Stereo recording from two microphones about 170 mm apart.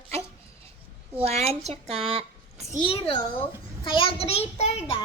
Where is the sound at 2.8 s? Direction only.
30° left (ahead or behind).